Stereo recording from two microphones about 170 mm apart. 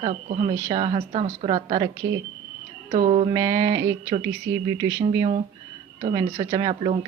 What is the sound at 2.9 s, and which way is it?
Speech, 40° right (ahead or behind).